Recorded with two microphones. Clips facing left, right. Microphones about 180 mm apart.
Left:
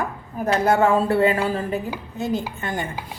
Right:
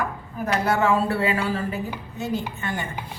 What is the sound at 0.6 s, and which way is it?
A woman's voice, 50° left (ahead or behind).